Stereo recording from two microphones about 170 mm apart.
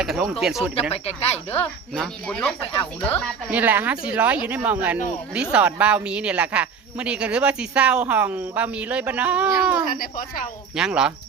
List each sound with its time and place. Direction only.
0.0 s speech: 5° right (ahead or behind)
0.8 s speech: 35° left (ahead or behind)
1.5 s speech: 5° left (ahead or behind)
3.5 s speech: 10° right (ahead or behind)
9.9 s a woman's voice: 55° left (ahead or behind)
10.8 s speech: 5° right (ahead or behind)